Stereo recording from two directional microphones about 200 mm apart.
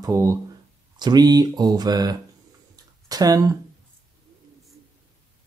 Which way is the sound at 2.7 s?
20° right (ahead or behind).